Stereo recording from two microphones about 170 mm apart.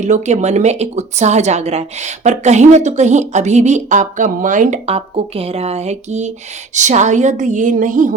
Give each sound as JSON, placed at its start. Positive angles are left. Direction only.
{"t": 0.0, "sound": "a woman's voice", "side_deg": -45}
{"t": 4.9, "sound": "a woman's voice", "side_deg": -35}